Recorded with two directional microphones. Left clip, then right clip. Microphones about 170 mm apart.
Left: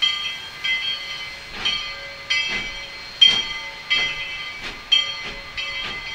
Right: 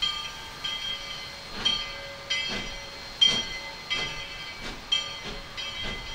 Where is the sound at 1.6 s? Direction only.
15° left (ahead or behind).